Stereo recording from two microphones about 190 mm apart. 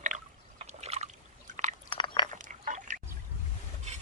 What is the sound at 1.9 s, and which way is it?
Chewing, 25° left (ahead or behind).